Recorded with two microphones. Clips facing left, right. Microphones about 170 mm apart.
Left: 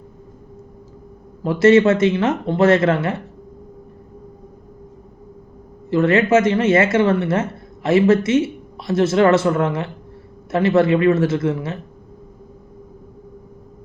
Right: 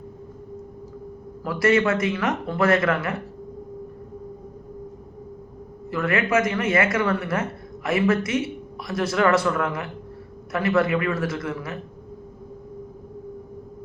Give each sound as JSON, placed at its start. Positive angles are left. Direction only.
{"t": 1.5, "sound": "a man's voice", "side_deg": 25}
{"t": 5.9, "sound": "a man's voice", "side_deg": 25}